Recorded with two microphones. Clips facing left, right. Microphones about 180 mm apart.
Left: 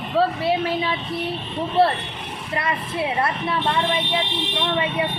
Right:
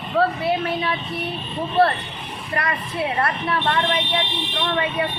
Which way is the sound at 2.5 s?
25° left (ahead or behind).